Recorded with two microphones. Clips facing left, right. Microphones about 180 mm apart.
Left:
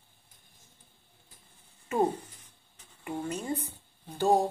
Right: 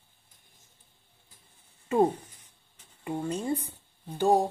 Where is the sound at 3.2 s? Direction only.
25° right (ahead or behind).